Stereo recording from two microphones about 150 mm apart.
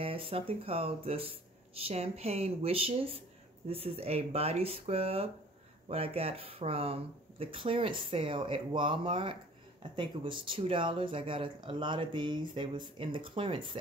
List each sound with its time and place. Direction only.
0.0 s speech: 40° right (ahead or behind)